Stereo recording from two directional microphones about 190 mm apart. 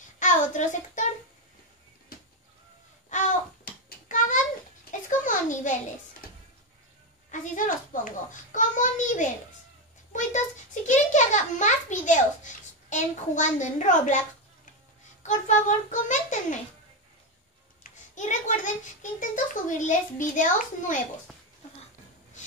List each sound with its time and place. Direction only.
0.2 s child singing: 40° left (ahead or behind)
3.1 s babbling: 40° left (ahead or behind)
5.2 s a sound: 40° left (ahead or behind)
7.2 s a child's voice: 45° left (ahead or behind)
15.2 s a child's voice: 40° left (ahead or behind)
18.1 s a child's voice: 40° left (ahead or behind)